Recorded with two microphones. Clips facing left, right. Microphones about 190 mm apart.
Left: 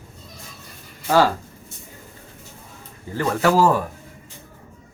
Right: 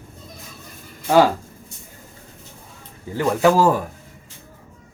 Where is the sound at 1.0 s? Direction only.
15° right (ahead or behind).